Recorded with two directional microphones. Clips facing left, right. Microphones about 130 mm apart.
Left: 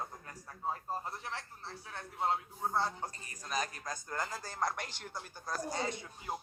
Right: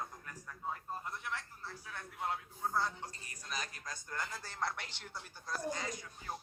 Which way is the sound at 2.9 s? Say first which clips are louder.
Left 5 dB; 45° left (ahead or behind).